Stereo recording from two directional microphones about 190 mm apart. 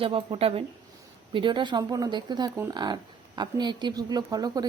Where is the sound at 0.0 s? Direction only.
30° right (ahead or behind).